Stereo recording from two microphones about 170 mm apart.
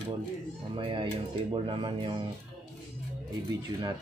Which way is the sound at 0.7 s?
30° right (ahead or behind).